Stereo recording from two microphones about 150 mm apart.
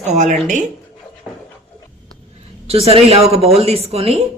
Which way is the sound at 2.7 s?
40° right (ahead or behind).